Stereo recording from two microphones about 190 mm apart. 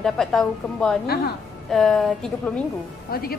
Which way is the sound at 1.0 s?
55° left (ahead or behind).